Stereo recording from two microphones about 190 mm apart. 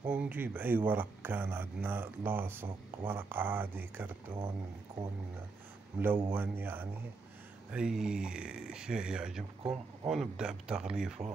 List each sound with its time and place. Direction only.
0.0 s speech: 10° right (ahead or behind)
5.9 s speech: 10° right (ahead or behind)
9.6 s speech: 30° right (ahead or behind)
10.1 s speech: 5° right (ahead or behind)